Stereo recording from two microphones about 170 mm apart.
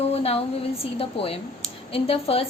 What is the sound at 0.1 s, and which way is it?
A woman's voice, 35° left (ahead or behind).